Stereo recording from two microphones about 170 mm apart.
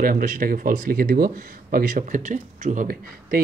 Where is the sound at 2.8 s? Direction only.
60° right (ahead or behind).